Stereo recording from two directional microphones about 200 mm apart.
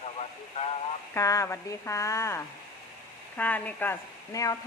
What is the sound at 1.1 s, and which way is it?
A woman's voice, 15° left (ahead or behind).